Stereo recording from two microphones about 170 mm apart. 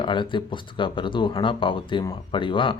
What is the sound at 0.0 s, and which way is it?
Speech, 30° left (ahead or behind).